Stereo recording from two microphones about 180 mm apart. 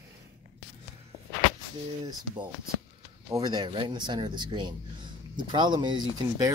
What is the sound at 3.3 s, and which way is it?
Speech, 25° right (ahead or behind).